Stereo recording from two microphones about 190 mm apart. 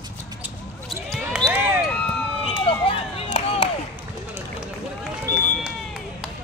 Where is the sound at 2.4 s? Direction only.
30° left (ahead or behind).